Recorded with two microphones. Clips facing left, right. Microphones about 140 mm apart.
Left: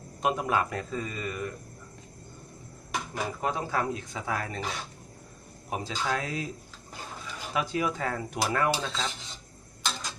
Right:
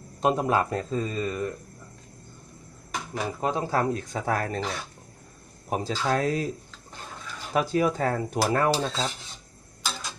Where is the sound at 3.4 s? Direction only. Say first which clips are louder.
Right 5 dB; 25° right (ahead or behind).